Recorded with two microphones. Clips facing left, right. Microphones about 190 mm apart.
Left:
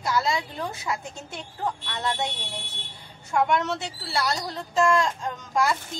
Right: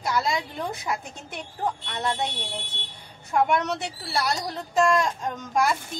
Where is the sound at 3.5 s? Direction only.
15° right (ahead or behind).